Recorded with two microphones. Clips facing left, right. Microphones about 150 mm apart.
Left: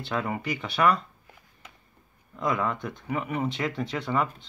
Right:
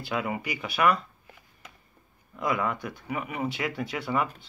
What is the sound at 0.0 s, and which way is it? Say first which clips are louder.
Speech: left 1 dB; 10° right (ahead or behind).